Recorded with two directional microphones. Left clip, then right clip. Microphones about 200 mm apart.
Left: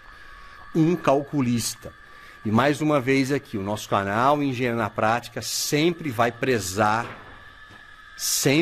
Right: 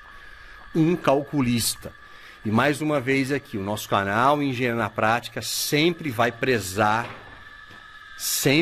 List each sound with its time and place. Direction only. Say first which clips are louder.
0.7 s speech: even; 5° left (ahead or behind)
2.4 s speech: left 1 dB; 15° left (ahead or behind)
3.6 s speech: right 2 dB; centre (ahead or behind)